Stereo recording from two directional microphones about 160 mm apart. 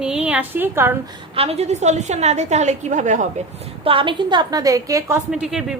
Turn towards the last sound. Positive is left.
turn(degrees=-5)  # may be behind; listen again after turning